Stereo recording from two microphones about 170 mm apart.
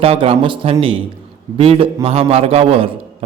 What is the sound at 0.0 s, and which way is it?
A man's voice, 35° right (ahead or behind).